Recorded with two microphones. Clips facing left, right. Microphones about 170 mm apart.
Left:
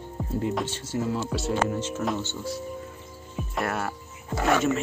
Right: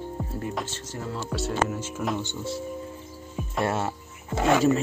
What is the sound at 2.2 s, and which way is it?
Speech, 15° right (ahead or behind).